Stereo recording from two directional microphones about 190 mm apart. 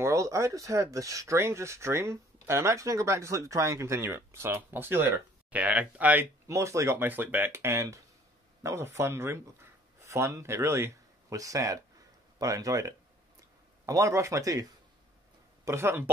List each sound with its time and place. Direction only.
0.0 s speech: 15° right (ahead or behind)